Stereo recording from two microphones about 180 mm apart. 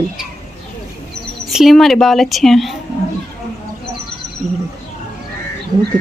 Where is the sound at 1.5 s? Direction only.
Centre (ahead or behind).